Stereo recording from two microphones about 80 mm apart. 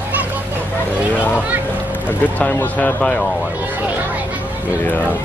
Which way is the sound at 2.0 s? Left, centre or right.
Left.